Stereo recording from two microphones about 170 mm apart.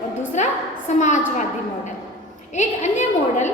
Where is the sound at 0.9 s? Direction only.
45° left (ahead or behind).